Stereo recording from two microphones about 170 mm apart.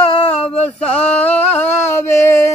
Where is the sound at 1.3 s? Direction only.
40° left (ahead or behind).